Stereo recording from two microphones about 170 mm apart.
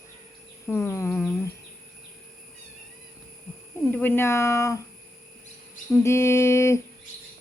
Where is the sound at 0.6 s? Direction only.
15° left (ahead or behind).